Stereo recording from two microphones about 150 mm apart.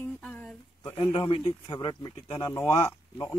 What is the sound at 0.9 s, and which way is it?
Speech, 35° left (ahead or behind).